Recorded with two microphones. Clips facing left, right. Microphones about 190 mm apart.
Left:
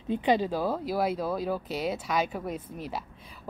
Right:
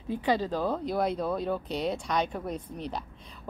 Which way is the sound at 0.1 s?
15° left (ahead or behind).